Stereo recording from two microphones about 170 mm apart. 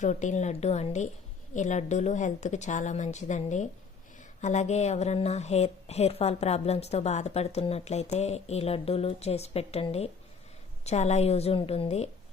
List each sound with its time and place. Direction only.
0.0 s a woman's voice: 45° left (ahead or behind)